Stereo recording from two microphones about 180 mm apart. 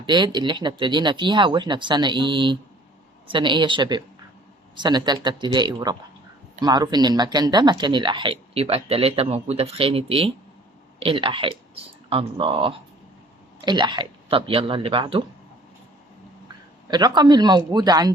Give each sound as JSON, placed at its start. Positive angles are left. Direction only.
{"t": 0.0, "sound": "speech", "side_deg": -25}
{"t": 16.9, "sound": "speech", "side_deg": -25}